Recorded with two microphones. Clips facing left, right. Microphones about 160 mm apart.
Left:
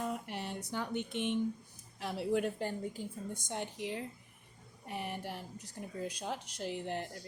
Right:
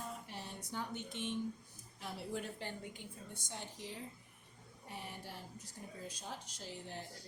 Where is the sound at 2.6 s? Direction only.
40° left (ahead or behind).